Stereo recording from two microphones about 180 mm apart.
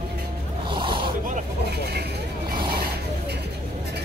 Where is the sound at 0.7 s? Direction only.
25° right (ahead or behind).